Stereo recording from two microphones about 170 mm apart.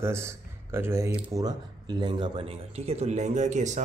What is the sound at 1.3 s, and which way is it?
Speech, 25° right (ahead or behind).